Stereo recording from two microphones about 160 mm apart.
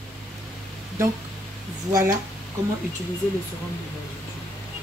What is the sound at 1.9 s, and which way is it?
Speech, 20° right (ahead or behind).